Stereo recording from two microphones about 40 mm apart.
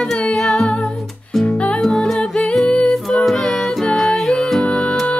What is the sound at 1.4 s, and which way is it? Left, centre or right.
Music, left.